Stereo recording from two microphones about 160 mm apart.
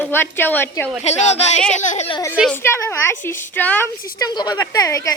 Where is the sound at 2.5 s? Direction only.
15° left (ahead or behind).